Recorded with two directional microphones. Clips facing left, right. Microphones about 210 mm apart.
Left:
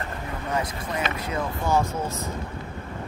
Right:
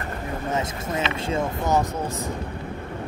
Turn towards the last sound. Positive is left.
turn(degrees=-20)  # may be behind; listen again after turning